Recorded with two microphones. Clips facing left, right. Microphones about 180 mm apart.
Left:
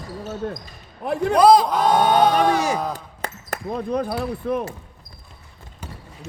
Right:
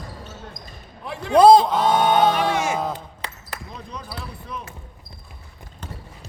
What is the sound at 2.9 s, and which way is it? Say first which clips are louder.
Speech: left 1 dB; 45° left (ahead or behind).